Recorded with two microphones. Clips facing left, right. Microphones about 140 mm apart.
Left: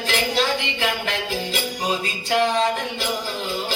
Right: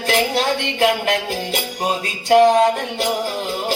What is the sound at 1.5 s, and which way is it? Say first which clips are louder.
Music: right 4 dB; 50° right (ahead or behind).